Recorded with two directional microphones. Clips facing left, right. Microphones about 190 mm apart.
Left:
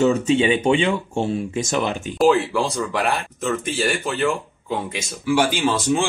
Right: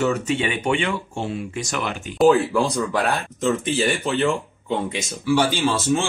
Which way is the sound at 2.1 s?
Centre (ahead or behind).